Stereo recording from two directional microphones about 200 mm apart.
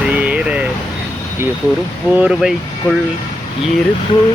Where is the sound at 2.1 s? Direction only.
5° right (ahead or behind).